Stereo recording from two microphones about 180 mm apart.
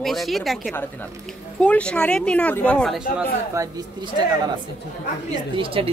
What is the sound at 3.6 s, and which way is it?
Speech, 15° right (ahead or behind).